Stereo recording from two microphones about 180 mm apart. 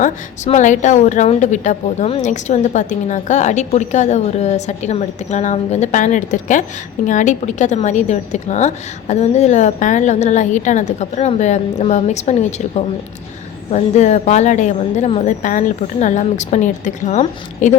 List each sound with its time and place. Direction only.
0.0 s a woman's voice: 40° left (ahead or behind)